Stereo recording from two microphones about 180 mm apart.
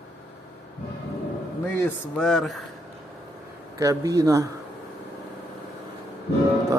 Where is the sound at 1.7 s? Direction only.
5° left (ahead or behind).